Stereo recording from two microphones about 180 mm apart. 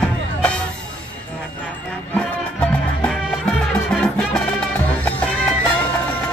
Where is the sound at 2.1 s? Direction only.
5° left (ahead or behind).